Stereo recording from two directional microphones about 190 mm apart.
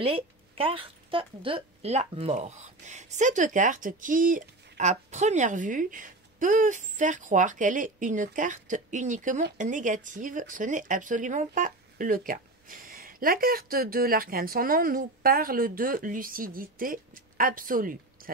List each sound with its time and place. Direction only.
0.0 s a woman's voice: 30° right (ahead or behind); by 18.3 s 45° right (ahead or behind)